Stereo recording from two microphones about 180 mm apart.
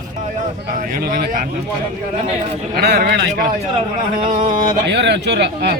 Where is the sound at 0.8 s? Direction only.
50° right (ahead or behind).